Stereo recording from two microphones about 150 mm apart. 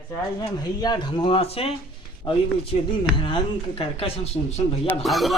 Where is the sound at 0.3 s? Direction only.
25° left (ahead or behind).